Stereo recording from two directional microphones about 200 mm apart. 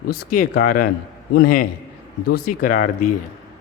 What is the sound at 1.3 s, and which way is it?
A man's voice, 45° left (ahead or behind).